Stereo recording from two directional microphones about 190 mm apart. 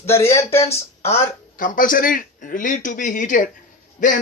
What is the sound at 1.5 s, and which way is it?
A man's voice, 45° left (ahead or behind).